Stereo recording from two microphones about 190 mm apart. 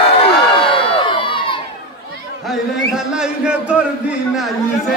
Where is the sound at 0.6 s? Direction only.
25° left (ahead or behind).